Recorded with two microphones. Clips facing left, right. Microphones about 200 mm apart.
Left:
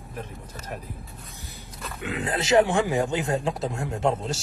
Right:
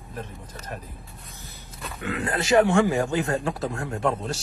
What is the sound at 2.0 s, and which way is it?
A man's voice, 15° left (ahead or behind).